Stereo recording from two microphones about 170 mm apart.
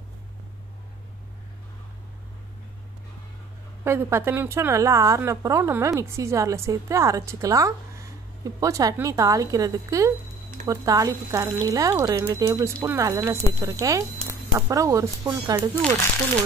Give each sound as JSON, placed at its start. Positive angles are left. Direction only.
{"t": 3.8, "sound": "a woman's voice", "side_deg": -15}